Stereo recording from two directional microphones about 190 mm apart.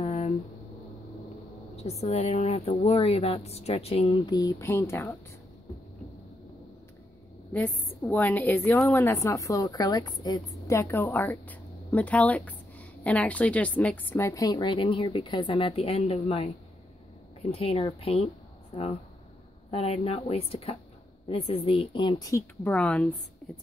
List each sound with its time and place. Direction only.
0.0 s a sound: 40° left (ahead or behind)
1.8 s a woman's voice: 35° left (ahead or behind)
4.4 s a woman's voice: 15° left (ahead or behind)
7.5 s a woman's voice: 10° left (ahead or behind); by 18.3 s 30° left (ahead or behind)
19.7 s a woman's voice: 30° left (ahead or behind); by 23.6 s 5° left (ahead or behind)